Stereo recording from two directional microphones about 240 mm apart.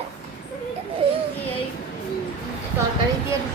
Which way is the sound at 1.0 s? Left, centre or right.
Right.